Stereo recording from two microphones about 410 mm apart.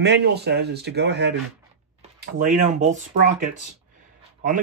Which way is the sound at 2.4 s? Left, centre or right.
Centre.